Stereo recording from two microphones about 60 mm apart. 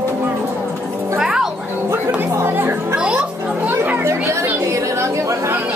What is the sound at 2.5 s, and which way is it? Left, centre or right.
Music, right.